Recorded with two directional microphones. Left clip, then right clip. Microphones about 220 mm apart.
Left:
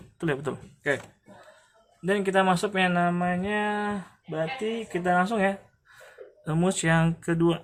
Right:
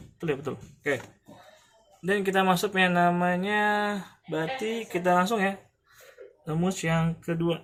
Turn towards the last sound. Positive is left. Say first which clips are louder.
# left 4 dB
turn(degrees=40)  # may be behind; listen again after turning